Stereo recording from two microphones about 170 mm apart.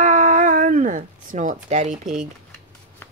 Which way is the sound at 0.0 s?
50° right (ahead or behind).